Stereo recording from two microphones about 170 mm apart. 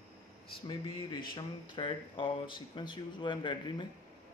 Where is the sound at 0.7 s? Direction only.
25° left (ahead or behind).